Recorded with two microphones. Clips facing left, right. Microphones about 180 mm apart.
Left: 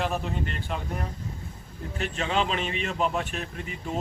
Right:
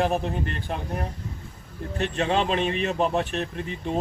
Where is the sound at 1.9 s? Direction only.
35° right (ahead or behind).